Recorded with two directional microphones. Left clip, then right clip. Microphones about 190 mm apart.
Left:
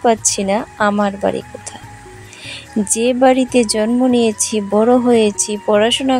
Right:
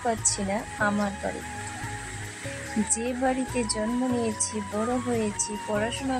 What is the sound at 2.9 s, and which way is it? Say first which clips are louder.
Speech: left 16 dB; 45° left (ahead or behind).